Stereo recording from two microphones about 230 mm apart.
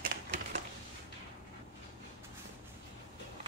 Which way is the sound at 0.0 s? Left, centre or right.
Right.